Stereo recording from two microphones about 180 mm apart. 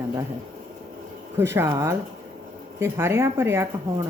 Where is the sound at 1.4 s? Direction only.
15° right (ahead or behind).